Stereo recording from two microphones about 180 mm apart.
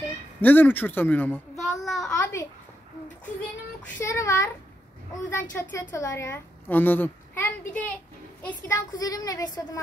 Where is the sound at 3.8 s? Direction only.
15° left (ahead or behind).